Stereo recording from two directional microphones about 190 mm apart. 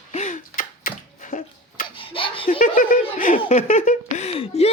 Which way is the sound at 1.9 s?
25° left (ahead or behind).